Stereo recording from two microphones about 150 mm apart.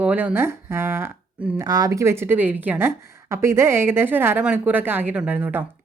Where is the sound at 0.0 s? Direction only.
10° right (ahead or behind).